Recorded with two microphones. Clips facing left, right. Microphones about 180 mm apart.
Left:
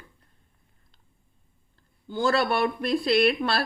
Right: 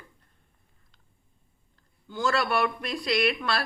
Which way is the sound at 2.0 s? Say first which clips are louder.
Left 3 dB; 30° left (ahead or behind).